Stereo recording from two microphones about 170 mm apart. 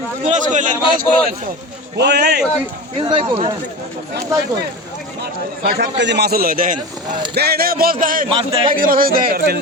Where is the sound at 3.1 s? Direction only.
35° right (ahead or behind).